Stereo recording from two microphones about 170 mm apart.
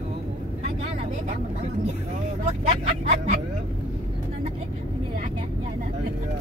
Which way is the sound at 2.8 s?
45° right (ahead or behind).